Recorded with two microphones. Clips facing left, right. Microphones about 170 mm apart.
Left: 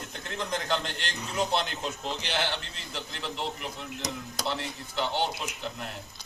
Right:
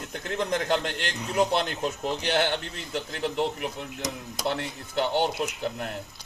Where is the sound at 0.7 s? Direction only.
50° right (ahead or behind).